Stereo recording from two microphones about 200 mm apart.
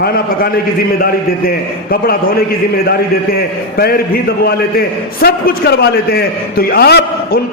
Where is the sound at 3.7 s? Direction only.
50° left (ahead or behind).